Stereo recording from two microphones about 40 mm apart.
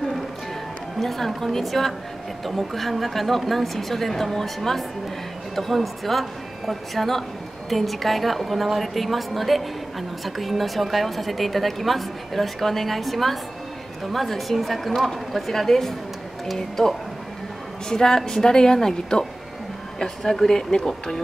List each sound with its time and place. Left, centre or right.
0.9 s a woman's voice: centre